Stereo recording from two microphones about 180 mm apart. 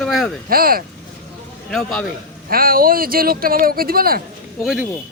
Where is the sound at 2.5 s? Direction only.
55° right (ahead or behind).